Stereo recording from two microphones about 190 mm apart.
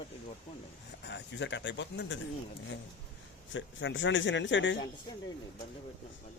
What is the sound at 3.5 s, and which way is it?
Speech, 75° left (ahead or behind).